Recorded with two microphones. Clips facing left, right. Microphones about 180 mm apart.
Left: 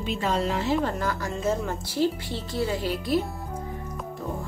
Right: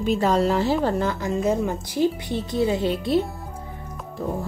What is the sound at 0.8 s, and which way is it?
A woman's voice, 25° right (ahead or behind).